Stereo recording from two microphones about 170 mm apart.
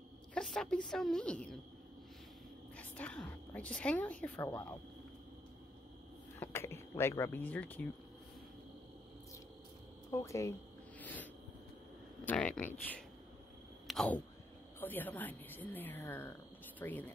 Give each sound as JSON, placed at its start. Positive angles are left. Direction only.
{"t": 0.3, "sound": "a woman's voice", "side_deg": 5}
{"t": 2.8, "sound": "a woman's voice", "side_deg": 10}
{"t": 6.4, "sound": "speech", "side_deg": 15}
{"t": 10.1, "sound": "a woman's voice", "side_deg": 15}
{"t": 11.0, "sound": "a sound", "side_deg": 10}
{"t": 12.3, "sound": "a woman's voice", "side_deg": 5}